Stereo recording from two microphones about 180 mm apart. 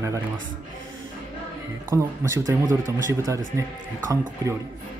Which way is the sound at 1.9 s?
15° right (ahead or behind).